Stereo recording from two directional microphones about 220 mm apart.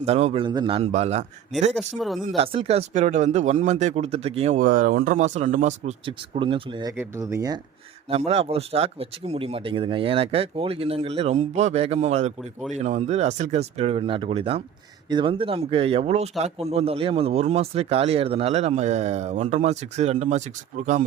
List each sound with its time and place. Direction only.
0.0 s speech: 30° right (ahead or behind)
2.0 s speech: centre (ahead or behind)
2.2 s speech: 30° right (ahead or behind)
6.9 s speech: 10° right (ahead or behind)
8.1 s speech: 25° right (ahead or behind)